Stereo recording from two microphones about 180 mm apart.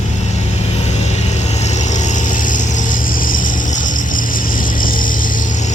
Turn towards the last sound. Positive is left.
turn(degrees=50)  # may be behind; listen again after turning